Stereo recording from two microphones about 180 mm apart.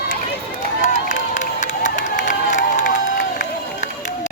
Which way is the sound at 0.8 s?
45° left (ahead or behind).